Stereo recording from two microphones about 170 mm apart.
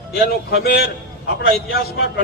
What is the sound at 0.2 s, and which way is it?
A man's voice, 65° left (ahead or behind).